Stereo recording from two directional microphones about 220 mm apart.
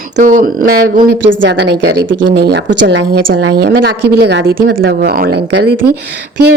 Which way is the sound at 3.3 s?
45° right (ahead or behind).